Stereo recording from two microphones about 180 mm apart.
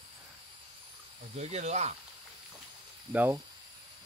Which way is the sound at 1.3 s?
35° right (ahead or behind).